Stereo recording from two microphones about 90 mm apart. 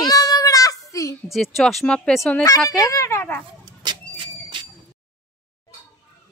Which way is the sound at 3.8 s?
60° right (ahead or behind).